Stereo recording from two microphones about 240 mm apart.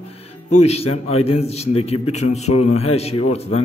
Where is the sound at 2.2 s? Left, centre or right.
Left.